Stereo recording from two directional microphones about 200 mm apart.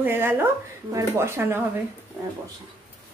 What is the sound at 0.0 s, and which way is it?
Speech, 10° right (ahead or behind).